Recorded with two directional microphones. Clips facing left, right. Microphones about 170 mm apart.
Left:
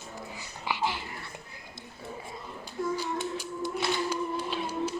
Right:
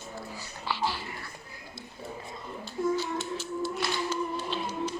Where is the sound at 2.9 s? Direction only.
10° left (ahead or behind).